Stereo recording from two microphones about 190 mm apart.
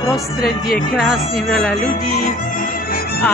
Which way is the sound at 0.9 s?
Centre (ahead or behind).